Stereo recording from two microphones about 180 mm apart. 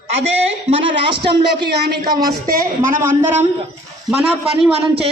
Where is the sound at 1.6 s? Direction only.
60° right (ahead or behind).